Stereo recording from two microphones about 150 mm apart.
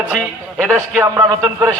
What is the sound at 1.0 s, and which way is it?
Speech, 15° right (ahead or behind).